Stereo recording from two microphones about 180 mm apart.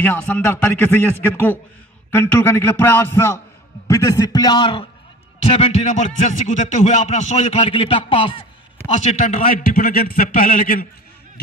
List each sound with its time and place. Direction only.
0.0 s a man's voice: 10° left (ahead or behind); by 8.3 s 30° left (ahead or behind)
8.9 s a man's voice: 40° left (ahead or behind)